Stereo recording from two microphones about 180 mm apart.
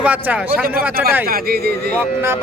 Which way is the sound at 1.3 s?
55° right (ahead or behind).